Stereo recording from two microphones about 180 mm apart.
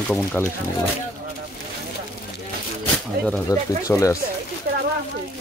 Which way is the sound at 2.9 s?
5° left (ahead or behind).